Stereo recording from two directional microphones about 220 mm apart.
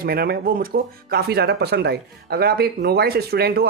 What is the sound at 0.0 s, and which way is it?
Speech, 45° right (ahead or behind).